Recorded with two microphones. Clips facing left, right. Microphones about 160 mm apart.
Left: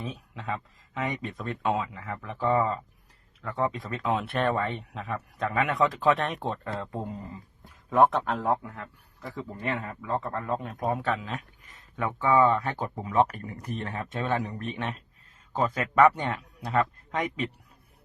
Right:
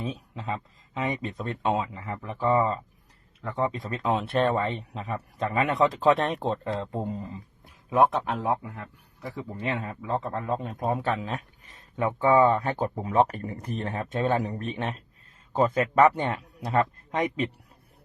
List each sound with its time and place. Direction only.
0.0 s a man's voice: 25° right (ahead or behind)
3.8 s a man's voice: 30° right (ahead or behind)
7.9 s a man's voice: 10° right (ahead or behind); by 17.5 s 30° right (ahead or behind)